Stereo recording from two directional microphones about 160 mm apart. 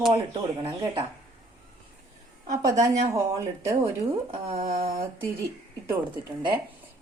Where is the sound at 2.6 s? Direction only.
20° right (ahead or behind).